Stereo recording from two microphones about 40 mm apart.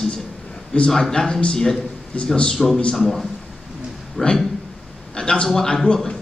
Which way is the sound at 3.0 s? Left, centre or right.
Centre.